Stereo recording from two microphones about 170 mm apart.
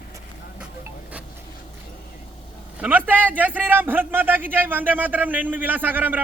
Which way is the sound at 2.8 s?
10° right (ahead or behind).